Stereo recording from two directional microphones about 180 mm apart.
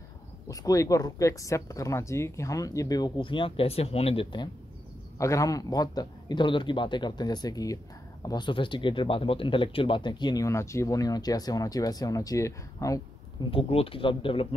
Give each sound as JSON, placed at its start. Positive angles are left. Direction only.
{"t": 0.5, "sound": "a man's voice", "side_deg": 20}
{"t": 13.5, "sound": "speech", "side_deg": 30}